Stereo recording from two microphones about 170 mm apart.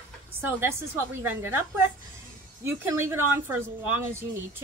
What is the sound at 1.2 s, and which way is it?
Speech, 15° right (ahead or behind).